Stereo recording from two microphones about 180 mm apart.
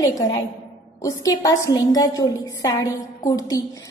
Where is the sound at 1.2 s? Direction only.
20° left (ahead or behind).